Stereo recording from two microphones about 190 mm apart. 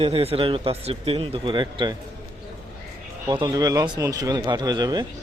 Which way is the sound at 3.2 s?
20° right (ahead or behind).